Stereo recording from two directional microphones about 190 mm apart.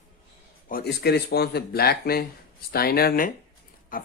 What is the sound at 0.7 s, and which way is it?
Speech, 55° left (ahead or behind).